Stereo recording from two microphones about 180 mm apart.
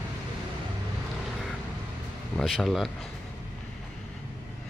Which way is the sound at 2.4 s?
Centre (ahead or behind).